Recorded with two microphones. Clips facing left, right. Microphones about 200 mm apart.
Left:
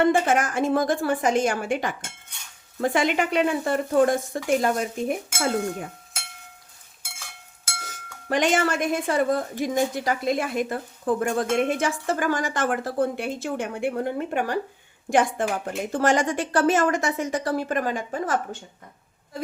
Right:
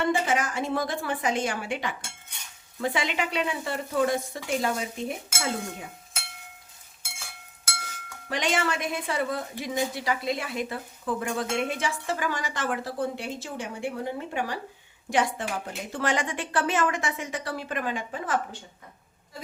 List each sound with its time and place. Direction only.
0.0 s a woman's voice: 50° left (ahead or behind)
8.3 s a woman's voice: 50° left (ahead or behind)